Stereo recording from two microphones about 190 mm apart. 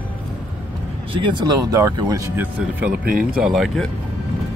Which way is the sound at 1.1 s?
25° right (ahead or behind).